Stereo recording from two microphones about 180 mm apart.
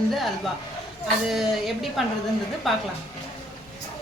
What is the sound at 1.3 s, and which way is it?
Speech, centre (ahead or behind).